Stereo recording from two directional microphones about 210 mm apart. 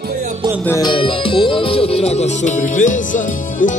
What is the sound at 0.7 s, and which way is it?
Speech, 20° left (ahead or behind).